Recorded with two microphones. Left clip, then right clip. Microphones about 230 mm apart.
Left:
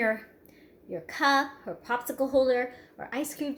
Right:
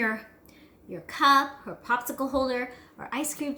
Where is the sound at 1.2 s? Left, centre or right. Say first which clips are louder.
Right 4 dB; centre.